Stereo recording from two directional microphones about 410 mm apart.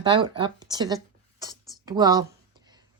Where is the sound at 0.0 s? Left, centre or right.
Centre.